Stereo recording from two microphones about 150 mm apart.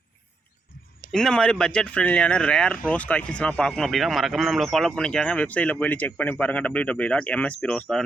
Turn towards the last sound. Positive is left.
turn(degrees=5)  # may be behind; listen again after turning